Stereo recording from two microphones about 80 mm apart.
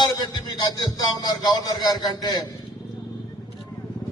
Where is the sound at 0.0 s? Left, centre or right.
Left.